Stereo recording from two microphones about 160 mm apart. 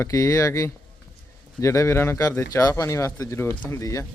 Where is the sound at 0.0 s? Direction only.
20° left (ahead or behind).